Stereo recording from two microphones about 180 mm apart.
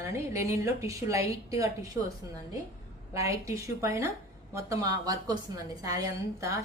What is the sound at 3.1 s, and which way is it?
A woman's voice, 15° right (ahead or behind).